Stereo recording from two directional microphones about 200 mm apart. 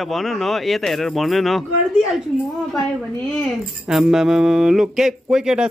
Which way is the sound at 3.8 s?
Centre (ahead or behind).